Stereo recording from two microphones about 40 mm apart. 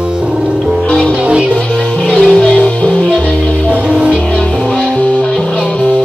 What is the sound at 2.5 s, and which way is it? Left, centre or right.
Music, left.